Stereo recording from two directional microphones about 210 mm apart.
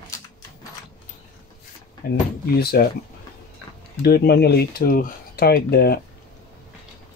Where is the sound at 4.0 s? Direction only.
50° left (ahead or behind).